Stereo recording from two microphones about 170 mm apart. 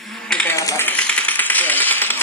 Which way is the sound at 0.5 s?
15° left (ahead or behind).